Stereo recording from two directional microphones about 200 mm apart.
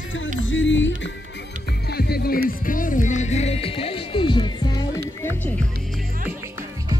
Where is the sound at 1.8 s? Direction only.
50° left (ahead or behind).